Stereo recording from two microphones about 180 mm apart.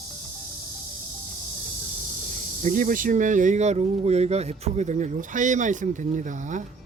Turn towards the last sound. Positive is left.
turn(degrees=-45)  # may be behind; listen again after turning